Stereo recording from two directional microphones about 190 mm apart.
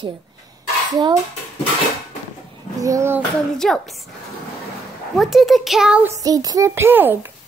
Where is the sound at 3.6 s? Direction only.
Centre (ahead or behind).